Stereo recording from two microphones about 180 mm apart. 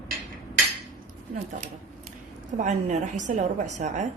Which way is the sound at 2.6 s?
40° right (ahead or behind).